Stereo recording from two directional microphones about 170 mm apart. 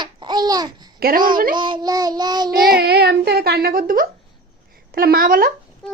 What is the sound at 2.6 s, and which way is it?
A child's voice, 65° right (ahead or behind).